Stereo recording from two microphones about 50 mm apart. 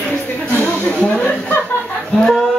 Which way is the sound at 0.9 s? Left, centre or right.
Left.